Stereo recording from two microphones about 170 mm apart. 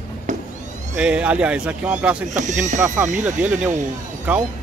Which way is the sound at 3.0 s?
10° right (ahead or behind).